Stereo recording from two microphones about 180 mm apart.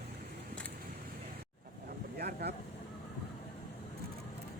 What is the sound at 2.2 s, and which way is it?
Vehicle, 60° right (ahead or behind).